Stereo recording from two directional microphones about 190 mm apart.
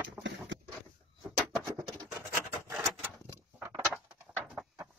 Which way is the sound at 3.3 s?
15° right (ahead or behind).